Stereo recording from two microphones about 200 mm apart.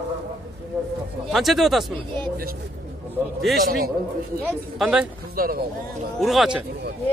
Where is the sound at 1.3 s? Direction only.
Centre (ahead or behind).